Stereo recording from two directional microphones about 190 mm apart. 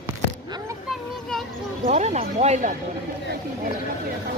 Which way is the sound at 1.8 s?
35° right (ahead or behind).